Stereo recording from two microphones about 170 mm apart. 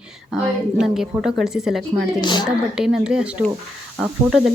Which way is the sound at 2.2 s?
25° left (ahead or behind).